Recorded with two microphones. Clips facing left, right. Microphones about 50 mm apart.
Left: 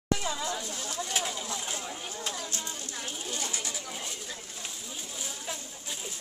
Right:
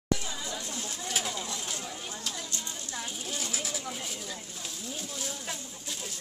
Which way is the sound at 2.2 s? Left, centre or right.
Left.